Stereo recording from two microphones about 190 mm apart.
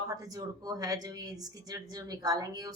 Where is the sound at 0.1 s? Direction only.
20° right (ahead or behind).